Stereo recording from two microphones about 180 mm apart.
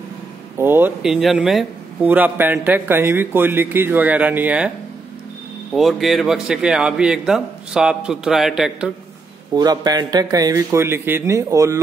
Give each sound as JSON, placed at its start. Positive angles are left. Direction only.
{"t": 0.6, "sound": "a man's voice", "side_deg": -10}
{"t": 9.5, "sound": "a man's voice", "side_deg": -20}